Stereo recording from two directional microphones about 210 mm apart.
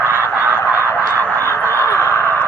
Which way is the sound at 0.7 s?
10° right (ahead or behind).